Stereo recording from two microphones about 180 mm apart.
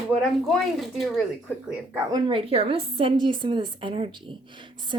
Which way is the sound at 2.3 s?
30° right (ahead or behind).